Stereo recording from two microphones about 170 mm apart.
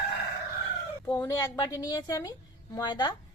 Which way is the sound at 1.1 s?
20° left (ahead or behind).